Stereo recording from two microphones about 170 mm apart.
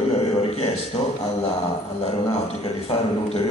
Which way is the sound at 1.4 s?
35° left (ahead or behind).